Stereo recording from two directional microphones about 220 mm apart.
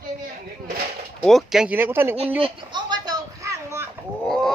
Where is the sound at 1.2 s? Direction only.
Centre (ahead or behind).